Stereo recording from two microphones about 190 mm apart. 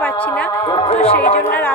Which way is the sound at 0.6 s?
25° left (ahead or behind).